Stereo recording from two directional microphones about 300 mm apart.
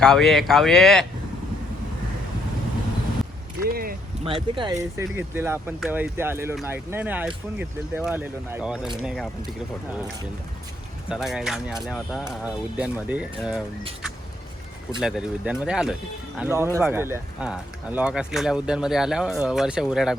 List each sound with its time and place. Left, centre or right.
0.0 s speech: centre
3.6 s a sound: right
4.3 s speech: centre
11.1 s speech: centre
15.0 s speech: centre